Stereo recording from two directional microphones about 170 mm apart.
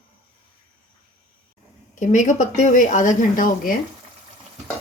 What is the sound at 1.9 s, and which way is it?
Speech, 45° left (ahead or behind).